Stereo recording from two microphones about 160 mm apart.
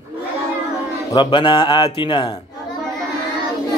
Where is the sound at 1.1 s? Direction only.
30° left (ahead or behind).